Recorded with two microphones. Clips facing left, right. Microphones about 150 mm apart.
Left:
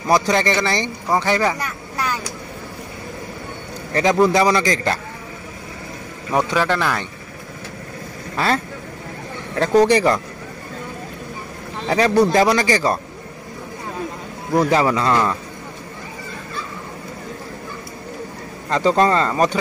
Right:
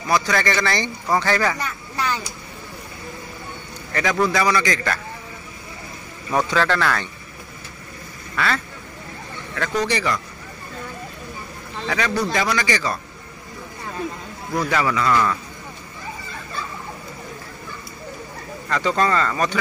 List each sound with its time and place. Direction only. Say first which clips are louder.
0.1 s speech: left 4 dB; 25° left (ahead or behind)
1.6 s vehicle: left 1 dB; 5° left (ahead or behind)
3.9 s a man's voice: left 5 dB; 30° left (ahead or behind)
6.3 s a man's voice: left 1 dB; 15° left (ahead or behind)
8.4 s speech: left 3 dB; 35° left (ahead or behind)
9.6 s speech: left 9 dB; 40° left (ahead or behind)
12.1 s speech: left 9 dB; 35° left (ahead or behind)
14.5 s speech: left 5 dB; 30° left (ahead or behind)
18.7 s speech: left 4 dB; 30° left (ahead or behind)